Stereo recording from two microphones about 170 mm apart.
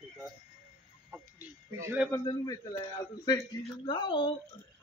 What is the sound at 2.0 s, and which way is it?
Speech, 20° left (ahead or behind).